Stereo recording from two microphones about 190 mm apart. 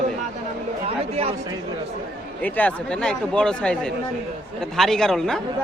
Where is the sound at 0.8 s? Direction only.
30° right (ahead or behind).